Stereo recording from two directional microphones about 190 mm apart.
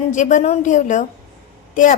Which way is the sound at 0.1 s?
40° left (ahead or behind).